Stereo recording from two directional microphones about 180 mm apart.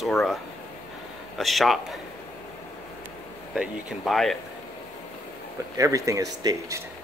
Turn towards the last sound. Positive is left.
turn(degrees=-20)  # may be behind; listen again after turning